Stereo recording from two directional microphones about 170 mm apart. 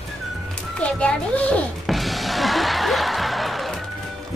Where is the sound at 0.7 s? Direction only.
5° left (ahead or behind).